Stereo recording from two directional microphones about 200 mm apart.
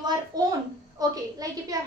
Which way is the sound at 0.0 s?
20° right (ahead or behind).